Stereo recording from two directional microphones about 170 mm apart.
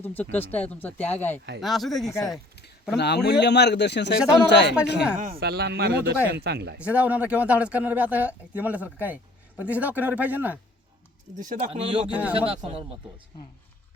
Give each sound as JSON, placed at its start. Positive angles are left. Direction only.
{"t": 0.0, "sound": "speech", "side_deg": 10}
{"t": 2.0, "sound": "speech", "side_deg": 20}
{"t": 3.0, "sound": "speech", "side_deg": 75}
{"t": 4.9, "sound": "speech", "side_deg": -5}
{"t": 5.4, "sound": "speech", "side_deg": -70}
{"t": 6.7, "sound": "speech", "side_deg": -10}
{"t": 11.3, "sound": "speech", "side_deg": -45}
{"t": 11.8, "sound": "speech", "side_deg": -30}